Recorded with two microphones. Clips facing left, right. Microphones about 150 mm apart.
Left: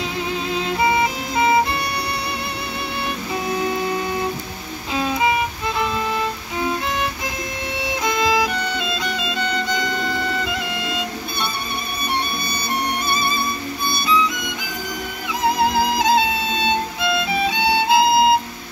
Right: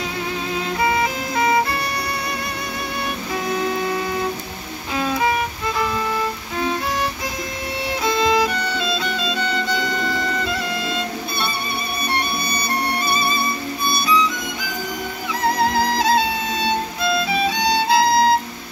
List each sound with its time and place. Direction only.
4.9 s music: 15° left (ahead or behind)
8.0 s violin: 15° left (ahead or behind)
8.3 s music: 10° left (ahead or behind)
15.6 s music: 15° left (ahead or behind)
17.5 s music: 15° left (ahead or behind)